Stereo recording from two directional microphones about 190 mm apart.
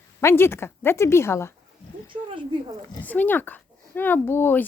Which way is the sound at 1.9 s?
45° right (ahead or behind).